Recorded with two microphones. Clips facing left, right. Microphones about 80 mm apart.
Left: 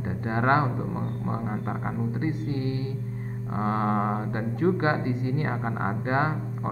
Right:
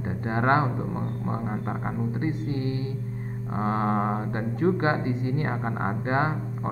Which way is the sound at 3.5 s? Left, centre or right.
Centre.